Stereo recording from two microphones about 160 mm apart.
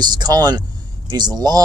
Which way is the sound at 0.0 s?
25° right (ahead or behind).